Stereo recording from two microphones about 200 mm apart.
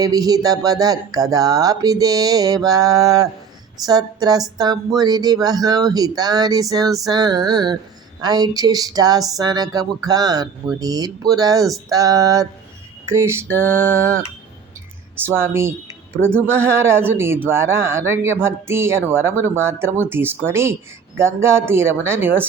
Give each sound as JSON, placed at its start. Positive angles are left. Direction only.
{"t": 0.0, "sound": "speech", "side_deg": -20}